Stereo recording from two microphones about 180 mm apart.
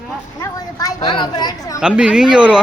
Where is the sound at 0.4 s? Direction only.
20° left (ahead or behind).